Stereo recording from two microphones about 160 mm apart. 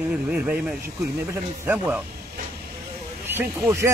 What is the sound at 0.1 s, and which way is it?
A man's voice, 5° right (ahead or behind).